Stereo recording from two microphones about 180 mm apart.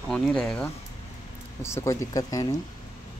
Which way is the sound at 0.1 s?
5° left (ahead or behind).